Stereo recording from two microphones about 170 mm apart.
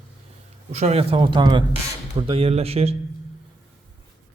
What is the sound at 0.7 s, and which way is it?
Speech, 40° right (ahead or behind).